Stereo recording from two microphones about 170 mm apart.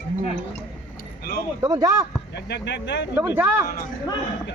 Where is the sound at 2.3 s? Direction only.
80° left.